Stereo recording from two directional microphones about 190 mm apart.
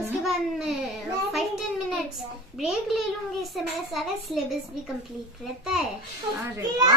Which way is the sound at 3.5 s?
Centre (ahead or behind).